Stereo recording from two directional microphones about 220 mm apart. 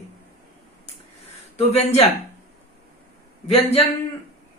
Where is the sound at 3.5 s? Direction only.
30° left (ahead or behind).